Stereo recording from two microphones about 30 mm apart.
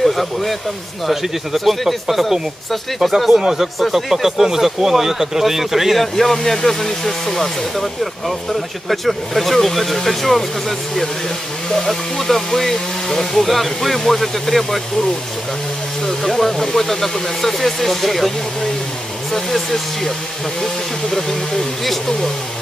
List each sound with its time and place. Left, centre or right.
0.0 s speech: centre
3.3 s speech: centre
5.9 s speech: centre
11.9 s speech: centre
16.3 s speech: centre
21.1 s speech: centre